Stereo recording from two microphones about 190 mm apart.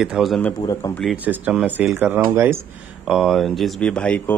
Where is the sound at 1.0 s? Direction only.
10° right (ahead or behind).